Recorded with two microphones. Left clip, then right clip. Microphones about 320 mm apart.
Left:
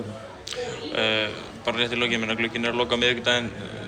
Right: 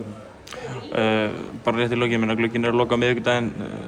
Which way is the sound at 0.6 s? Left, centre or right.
Right.